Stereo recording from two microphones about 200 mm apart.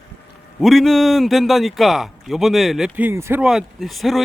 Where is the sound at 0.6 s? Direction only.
Centre (ahead or behind).